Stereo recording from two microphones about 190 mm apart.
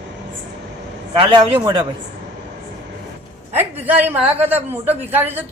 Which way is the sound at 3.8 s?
10° right (ahead or behind).